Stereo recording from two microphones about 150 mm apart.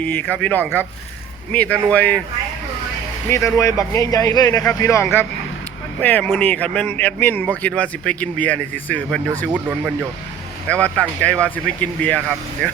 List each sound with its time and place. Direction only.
0.0 s speech: 10° left (ahead or behind)
3.2 s speech: 20° left (ahead or behind)
9.0 s speech: 5° right (ahead or behind)
10.7 s speech: 10° left (ahead or behind)